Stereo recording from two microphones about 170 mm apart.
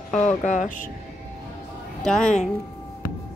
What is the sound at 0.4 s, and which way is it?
Speech, 45° left (ahead or behind).